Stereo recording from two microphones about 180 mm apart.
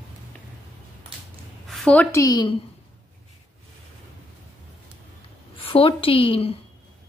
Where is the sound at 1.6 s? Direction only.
5° left (ahead or behind); by 2.5 s 20° left (ahead or behind).